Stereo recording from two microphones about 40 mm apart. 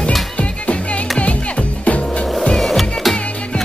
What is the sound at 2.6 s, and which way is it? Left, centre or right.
Music, centre.